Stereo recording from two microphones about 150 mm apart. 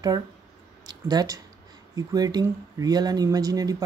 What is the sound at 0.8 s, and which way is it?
Speech, 25° right (ahead or behind).